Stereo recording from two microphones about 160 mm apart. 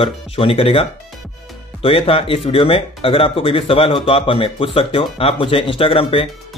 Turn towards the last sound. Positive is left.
turn(degrees=35)  # may be behind; listen again after turning